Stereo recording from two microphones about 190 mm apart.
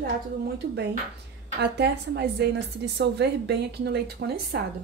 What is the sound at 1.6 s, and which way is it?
A woman's voice, 60° right (ahead or behind).